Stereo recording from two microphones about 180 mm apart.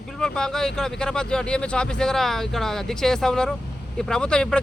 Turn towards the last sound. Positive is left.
turn(degrees=5)  # may be behind; listen again after turning